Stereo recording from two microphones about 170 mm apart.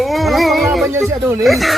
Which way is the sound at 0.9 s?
15° right (ahead or behind).